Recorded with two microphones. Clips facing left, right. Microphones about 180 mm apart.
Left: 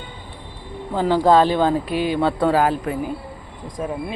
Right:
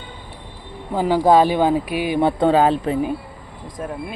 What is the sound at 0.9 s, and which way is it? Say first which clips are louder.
Speech: right 1 dB; 10° right (ahead or behind).